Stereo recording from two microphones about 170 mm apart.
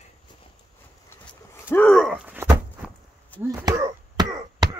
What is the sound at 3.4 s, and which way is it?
Chop, 20° right (ahead or behind).